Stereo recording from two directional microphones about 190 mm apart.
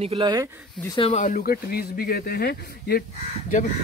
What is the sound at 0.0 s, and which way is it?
Speech, 25° right (ahead or behind).